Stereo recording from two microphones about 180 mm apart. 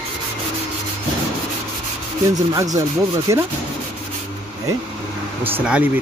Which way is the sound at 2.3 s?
20° right (ahead or behind).